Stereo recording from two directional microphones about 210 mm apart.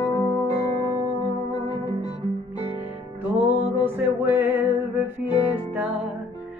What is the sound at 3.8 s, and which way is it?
Music, 10° right (ahead or behind).